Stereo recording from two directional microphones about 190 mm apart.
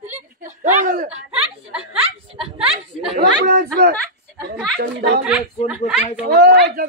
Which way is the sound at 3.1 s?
50° right (ahead or behind).